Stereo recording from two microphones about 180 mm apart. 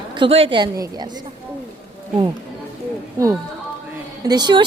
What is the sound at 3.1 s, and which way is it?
A woman's voice, 15° right (ahead or behind).